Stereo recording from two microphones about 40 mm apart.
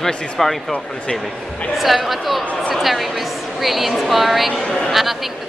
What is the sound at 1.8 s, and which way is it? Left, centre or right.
A woman's voice, centre.